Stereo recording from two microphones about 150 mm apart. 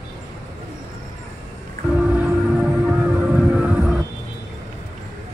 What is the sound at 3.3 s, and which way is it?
Vehicle, 10° right (ahead or behind).